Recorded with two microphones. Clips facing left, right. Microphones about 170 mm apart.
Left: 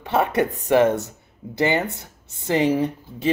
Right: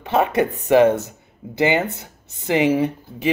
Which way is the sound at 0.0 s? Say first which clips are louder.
Right 2 dB; 20° right (ahead or behind).